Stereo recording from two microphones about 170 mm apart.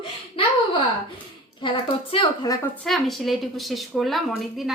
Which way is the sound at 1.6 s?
30° left (ahead or behind).